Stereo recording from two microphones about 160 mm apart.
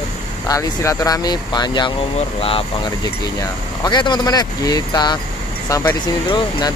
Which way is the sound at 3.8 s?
30° left (ahead or behind).